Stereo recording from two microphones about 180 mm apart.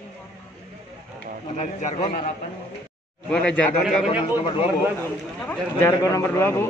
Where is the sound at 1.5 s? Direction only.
40° left (ahead or behind).